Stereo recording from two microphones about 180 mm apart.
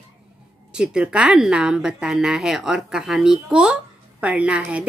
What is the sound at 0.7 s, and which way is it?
Speech, 5° right (ahead or behind).